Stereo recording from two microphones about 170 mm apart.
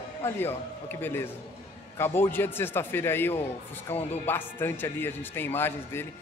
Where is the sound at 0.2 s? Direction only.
15° left (ahead or behind).